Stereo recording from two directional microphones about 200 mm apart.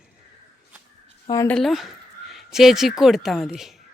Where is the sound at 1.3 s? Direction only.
15° left (ahead or behind).